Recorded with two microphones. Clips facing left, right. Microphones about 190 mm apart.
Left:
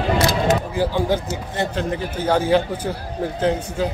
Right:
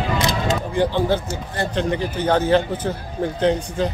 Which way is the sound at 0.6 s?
5° left (ahead or behind).